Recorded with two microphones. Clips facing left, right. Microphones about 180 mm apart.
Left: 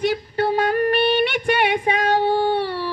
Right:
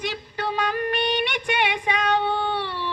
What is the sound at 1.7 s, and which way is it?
Child singing, 50° left (ahead or behind).